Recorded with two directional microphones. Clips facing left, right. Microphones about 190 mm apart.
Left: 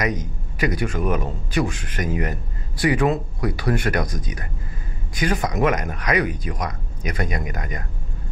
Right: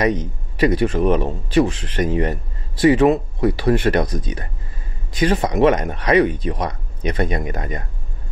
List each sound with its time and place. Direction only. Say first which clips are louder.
0.0 s speech: right 6 dB; 30° right (ahead or behind)